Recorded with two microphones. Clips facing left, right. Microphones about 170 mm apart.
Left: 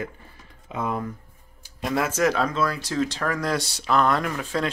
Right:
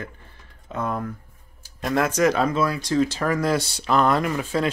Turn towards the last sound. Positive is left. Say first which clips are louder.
# right 3 dB
turn(degrees=-5)  # may be behind; listen again after turning